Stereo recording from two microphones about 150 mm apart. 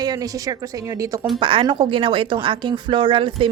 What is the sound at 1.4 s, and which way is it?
Speech, 35° right (ahead or behind).